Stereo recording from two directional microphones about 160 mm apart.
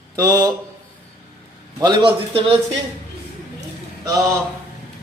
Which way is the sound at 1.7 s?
25° right (ahead or behind).